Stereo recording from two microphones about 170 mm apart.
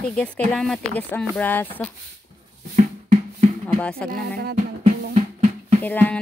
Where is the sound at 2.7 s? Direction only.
50° right (ahead or behind).